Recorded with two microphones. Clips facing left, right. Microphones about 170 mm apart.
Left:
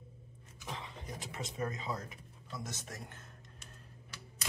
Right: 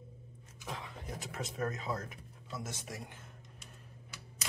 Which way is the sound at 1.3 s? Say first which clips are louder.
Right 2 dB; centre (ahead or behind).